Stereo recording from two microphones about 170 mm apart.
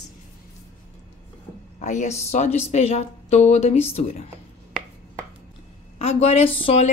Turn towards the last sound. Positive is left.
turn(degrees=35)  # may be behind; listen again after turning